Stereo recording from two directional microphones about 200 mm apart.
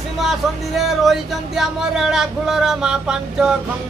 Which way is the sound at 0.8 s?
Centre (ahead or behind).